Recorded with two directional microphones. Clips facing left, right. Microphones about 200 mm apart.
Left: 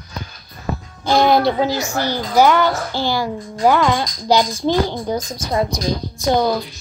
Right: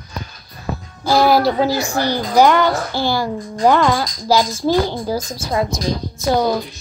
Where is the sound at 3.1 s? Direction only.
10° left (ahead or behind).